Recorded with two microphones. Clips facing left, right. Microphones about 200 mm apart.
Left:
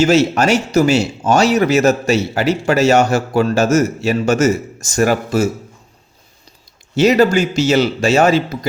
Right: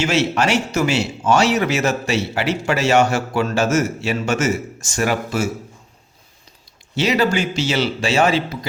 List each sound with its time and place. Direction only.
0.0 s speech: 40° left (ahead or behind)
6.9 s speech: 45° left (ahead or behind)